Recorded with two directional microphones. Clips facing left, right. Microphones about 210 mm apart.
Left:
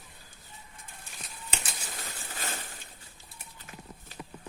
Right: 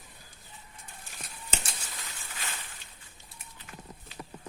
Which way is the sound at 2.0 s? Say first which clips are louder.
Left 4 dB; 45° left (ahead or behind).